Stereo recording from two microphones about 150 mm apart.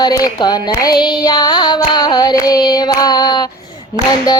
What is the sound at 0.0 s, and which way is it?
Child singing, 25° left (ahead or behind).